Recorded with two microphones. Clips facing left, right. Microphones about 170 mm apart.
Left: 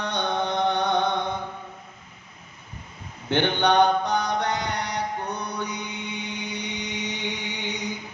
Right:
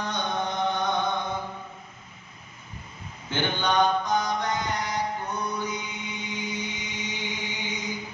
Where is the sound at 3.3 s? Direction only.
65° left (ahead or behind).